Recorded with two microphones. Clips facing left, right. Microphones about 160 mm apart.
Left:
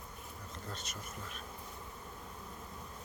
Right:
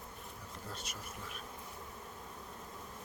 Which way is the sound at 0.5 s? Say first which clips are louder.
Left 1 dB; 10° right (ahead or behind).